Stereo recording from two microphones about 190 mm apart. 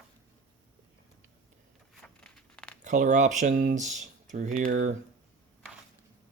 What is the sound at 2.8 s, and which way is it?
Speech, 40° right (ahead or behind).